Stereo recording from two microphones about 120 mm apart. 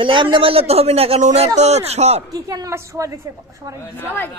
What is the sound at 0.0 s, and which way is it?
A woman's voice, 45° right (ahead or behind).